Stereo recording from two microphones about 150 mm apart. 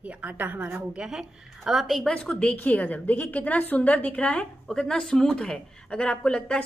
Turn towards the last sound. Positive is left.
turn(degrees=5)  # may be behind; listen again after turning